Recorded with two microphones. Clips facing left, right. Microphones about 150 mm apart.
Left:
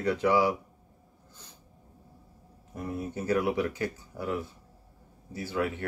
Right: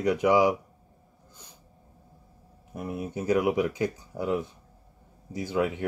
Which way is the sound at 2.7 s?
10° right (ahead or behind).